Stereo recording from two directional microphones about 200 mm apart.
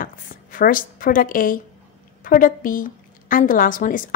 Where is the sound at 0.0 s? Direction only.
40° left (ahead or behind).